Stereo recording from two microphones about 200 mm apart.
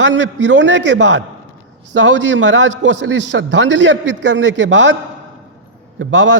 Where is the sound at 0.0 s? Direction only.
65° right (ahead or behind).